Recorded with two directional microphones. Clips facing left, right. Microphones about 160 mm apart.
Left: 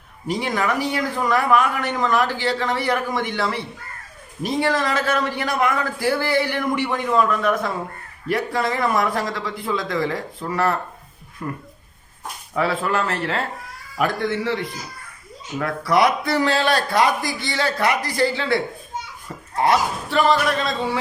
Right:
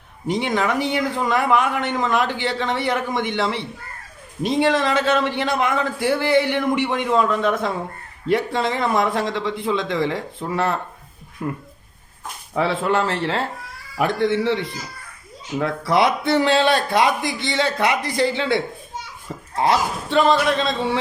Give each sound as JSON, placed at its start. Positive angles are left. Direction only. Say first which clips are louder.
{"t": 0.3, "sound": "a man's voice", "louder": "right 2 dB", "side_deg": -20}
{"t": 20.1, "sound": "a man's voice", "louder": "right 2 dB", "side_deg": -20}